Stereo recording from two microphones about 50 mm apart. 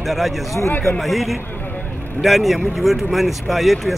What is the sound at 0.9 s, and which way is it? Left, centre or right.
Speech, centre.